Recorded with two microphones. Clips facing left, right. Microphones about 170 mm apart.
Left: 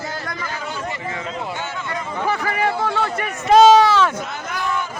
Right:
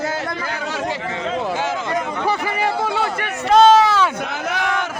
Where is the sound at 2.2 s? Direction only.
10° right (ahead or behind).